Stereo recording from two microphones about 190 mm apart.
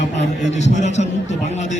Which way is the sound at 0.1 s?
35° left (ahead or behind).